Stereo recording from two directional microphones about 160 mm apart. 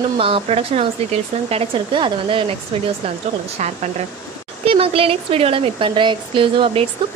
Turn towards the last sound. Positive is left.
turn(degrees=-35)  # may be behind; listen again after turning